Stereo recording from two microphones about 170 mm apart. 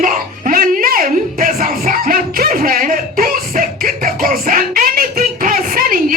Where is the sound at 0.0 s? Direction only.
50° right (ahead or behind).